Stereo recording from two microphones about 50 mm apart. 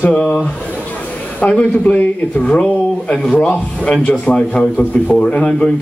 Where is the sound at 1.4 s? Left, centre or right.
Left.